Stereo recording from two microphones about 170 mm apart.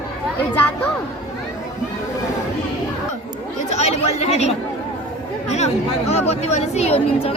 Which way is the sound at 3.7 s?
40° left (ahead or behind).